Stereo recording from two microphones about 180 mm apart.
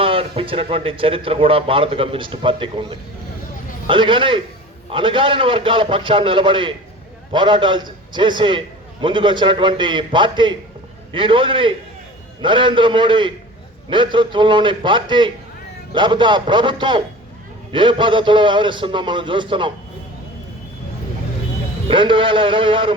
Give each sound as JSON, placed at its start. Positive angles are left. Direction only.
{"t": 0.0, "sound": "a man's voice", "side_deg": -30}
{"t": 21.8, "sound": "a man's voice", "side_deg": -25}